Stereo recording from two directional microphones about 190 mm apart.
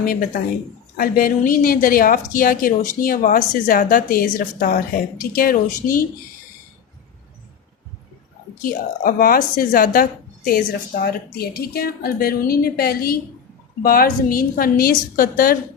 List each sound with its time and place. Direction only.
0.0 s speech: 50° left (ahead or behind)
8.6 s speech: 50° left (ahead or behind)